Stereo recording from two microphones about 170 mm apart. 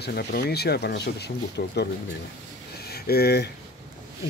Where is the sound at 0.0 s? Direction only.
70° left (ahead or behind).